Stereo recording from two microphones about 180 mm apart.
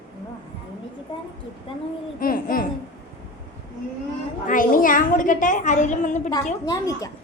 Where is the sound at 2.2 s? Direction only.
50° left (ahead or behind).